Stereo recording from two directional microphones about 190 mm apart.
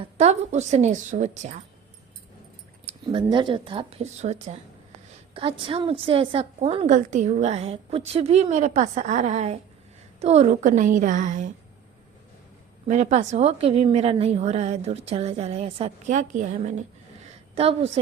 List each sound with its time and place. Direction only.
0.2 s a woman's voice: 35° right (ahead or behind)
2.8 s a woman's voice: 25° right (ahead or behind)
12.9 s a woman's voice: 40° right (ahead or behind)